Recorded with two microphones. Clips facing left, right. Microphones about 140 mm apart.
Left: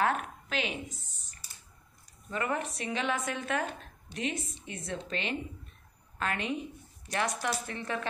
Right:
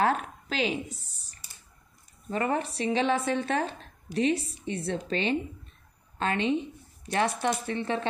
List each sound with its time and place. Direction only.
0.0 s a sound: 35° right (ahead or behind)
2.2 s speech: 35° right (ahead or behind)
6.1 s speech: 30° right (ahead or behind)